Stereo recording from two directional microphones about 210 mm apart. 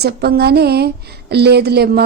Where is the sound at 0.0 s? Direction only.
50° right (ahead or behind).